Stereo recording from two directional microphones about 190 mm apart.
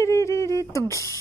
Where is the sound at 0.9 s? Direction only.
15° left (ahead or behind).